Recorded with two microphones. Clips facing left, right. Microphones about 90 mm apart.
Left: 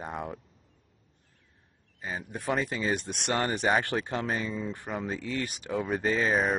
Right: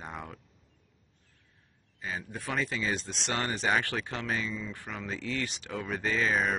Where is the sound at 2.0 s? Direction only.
25° left (ahead or behind).